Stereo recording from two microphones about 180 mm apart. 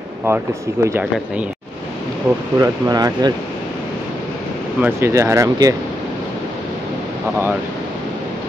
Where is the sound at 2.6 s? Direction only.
20° right (ahead or behind).